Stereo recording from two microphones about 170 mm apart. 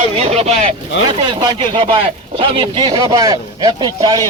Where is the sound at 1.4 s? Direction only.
30° right (ahead or behind).